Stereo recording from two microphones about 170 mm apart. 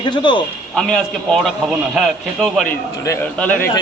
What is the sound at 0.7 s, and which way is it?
A man's voice, 5° left (ahead or behind).